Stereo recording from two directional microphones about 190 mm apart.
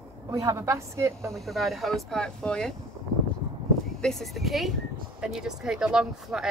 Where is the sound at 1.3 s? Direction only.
Centre (ahead or behind).